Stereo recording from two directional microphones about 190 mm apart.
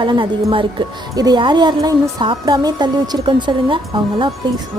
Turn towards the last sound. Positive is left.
turn(degrees=-25)  # may be behind; listen again after turning